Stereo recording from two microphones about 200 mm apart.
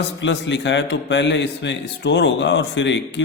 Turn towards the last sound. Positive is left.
turn(degrees=65)  # may be behind; listen again after turning